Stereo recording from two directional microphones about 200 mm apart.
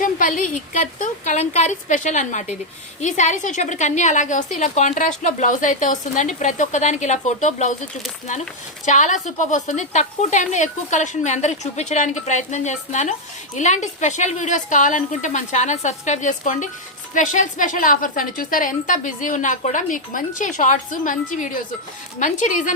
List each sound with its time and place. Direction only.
0.0 s a woman's voice: 40° left (ahead or behind)
8.9 s a woman's voice: 40° left (ahead or behind)